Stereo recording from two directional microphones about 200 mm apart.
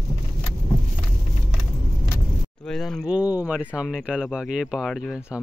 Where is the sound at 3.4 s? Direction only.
5° right (ahead or behind).